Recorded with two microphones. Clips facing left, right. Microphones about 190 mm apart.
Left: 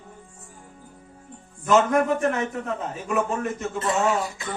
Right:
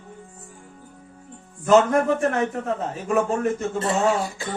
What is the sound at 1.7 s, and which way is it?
A man's voice, 35° right (ahead or behind).